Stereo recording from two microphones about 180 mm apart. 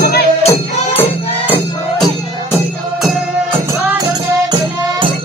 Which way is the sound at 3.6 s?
20° right (ahead or behind).